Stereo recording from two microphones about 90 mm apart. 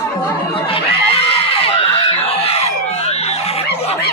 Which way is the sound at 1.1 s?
90° left.